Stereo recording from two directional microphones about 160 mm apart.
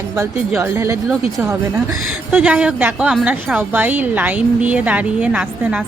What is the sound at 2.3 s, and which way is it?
A woman's voice, 10° right (ahead or behind).